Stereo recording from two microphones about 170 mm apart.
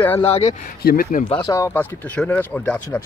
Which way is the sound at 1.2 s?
30° left (ahead or behind).